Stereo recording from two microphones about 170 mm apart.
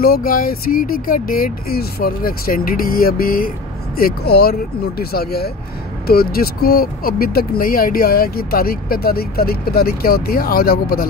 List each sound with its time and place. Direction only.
0.0 s speech: 60° left (ahead or behind)